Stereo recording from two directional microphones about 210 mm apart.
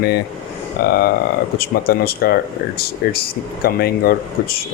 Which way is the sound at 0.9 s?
45° left (ahead or behind).